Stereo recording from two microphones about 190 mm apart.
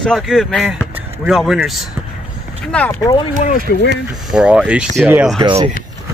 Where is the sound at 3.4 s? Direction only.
45° left (ahead or behind).